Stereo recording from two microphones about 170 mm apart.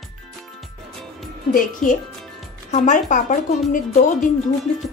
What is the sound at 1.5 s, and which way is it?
Speech, 50° left (ahead or behind).